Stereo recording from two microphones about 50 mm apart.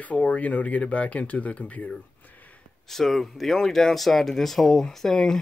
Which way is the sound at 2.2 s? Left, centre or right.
Left.